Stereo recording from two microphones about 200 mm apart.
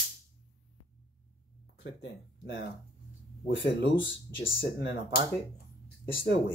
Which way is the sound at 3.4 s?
65° left (ahead or behind).